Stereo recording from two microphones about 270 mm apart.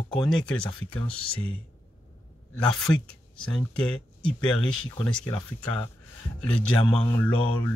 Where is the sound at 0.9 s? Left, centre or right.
Centre.